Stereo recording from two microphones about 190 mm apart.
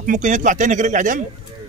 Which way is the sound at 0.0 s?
45° right (ahead or behind).